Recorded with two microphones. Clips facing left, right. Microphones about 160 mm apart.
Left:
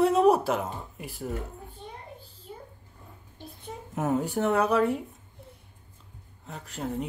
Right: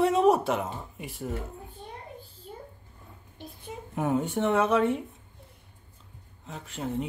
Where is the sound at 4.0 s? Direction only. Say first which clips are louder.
Even; centre (ahead or behind).